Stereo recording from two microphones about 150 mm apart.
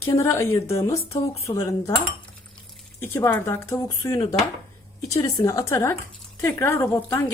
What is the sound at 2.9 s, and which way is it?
A woman's voice, 15° left (ahead or behind).